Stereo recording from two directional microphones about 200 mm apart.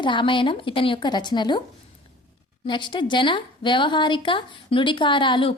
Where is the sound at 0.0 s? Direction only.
25° left (ahead or behind).